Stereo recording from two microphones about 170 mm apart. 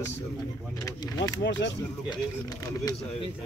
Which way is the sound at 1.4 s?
90° left.